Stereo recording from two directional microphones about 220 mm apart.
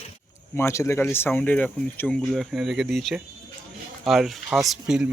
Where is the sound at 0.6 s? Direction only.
10° left (ahead or behind).